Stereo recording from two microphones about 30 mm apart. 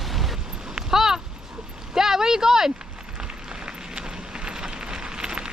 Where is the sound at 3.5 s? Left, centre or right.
Right.